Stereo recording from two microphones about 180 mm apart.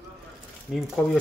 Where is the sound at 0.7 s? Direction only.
5° right (ahead or behind).